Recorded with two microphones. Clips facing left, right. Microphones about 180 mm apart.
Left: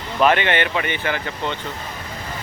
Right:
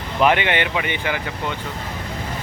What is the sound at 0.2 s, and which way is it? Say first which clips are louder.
Speech: even; 15° right (ahead or behind).